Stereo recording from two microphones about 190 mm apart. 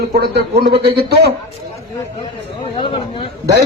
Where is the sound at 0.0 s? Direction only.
55° right (ahead or behind).